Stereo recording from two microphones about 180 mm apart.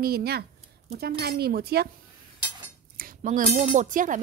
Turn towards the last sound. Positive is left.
turn(degrees=-45)  # may be behind; listen again after turning